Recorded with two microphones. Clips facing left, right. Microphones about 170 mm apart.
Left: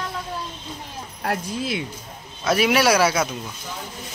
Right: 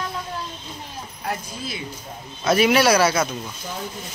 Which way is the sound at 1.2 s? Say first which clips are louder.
Left 4 dB; 70° left (ahead or behind).